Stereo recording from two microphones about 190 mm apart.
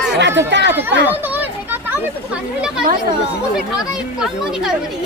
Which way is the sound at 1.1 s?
10° right (ahead or behind).